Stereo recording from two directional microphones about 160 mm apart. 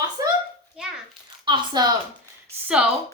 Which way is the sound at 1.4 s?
25° right (ahead or behind).